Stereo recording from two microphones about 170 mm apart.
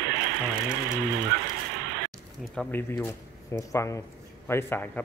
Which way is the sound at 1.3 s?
75° right (ahead or behind).